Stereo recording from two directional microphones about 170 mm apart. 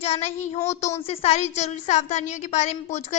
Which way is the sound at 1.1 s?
35° left (ahead or behind).